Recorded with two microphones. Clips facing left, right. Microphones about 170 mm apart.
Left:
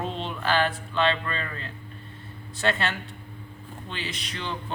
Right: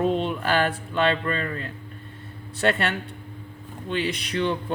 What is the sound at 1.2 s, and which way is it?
Speech, 45° right (ahead or behind).